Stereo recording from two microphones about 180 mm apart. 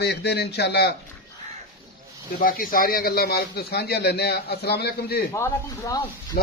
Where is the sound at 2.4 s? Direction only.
50° left (ahead or behind).